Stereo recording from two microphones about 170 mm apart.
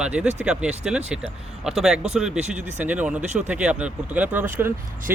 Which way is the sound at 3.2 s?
45° right (ahead or behind).